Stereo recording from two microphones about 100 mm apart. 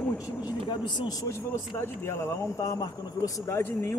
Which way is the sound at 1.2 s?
25° left (ahead or behind).